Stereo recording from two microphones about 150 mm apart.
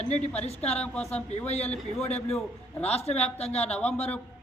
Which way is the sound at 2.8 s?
45° left (ahead or behind).